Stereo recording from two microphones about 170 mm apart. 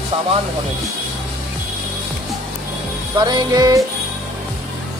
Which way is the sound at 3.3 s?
25° right (ahead or behind).